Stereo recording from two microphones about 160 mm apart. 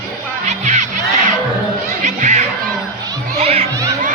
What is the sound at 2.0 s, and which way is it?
Chatter, 45° right (ahead or behind).